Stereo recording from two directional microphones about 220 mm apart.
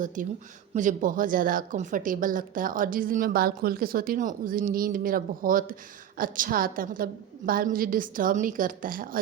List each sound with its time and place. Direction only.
0.2 s speech: 35° right (ahead or behind)